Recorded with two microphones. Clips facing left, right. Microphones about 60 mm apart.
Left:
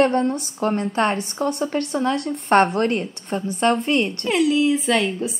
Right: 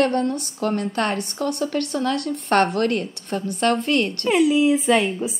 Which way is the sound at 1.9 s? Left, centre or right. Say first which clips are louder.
Left 1 dB; centre.